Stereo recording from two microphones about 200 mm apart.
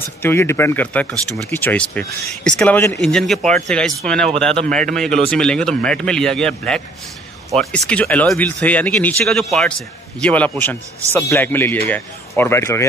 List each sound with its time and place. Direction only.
0.2 s speech: 10° left (ahead or behind)